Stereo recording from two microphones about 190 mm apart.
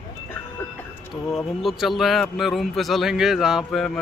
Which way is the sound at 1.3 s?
Centre (ahead or behind).